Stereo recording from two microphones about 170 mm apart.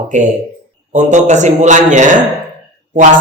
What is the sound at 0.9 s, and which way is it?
A man's voice, 45° right (ahead or behind).